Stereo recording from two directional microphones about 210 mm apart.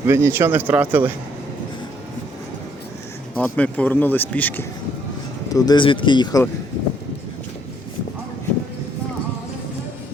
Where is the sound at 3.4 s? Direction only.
5° left (ahead or behind).